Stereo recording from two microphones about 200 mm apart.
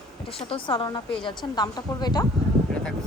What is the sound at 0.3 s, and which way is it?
Speech, 25° left (ahead or behind).